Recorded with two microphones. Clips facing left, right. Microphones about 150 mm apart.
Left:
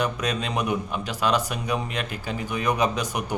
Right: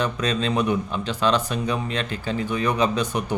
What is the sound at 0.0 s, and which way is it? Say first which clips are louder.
A man's voice: right 2 dB; 10° left (ahead or behind).